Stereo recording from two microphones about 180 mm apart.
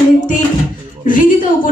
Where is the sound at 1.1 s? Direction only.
50° left (ahead or behind).